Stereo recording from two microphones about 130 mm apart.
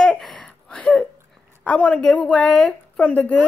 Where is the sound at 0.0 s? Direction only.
5° left (ahead or behind).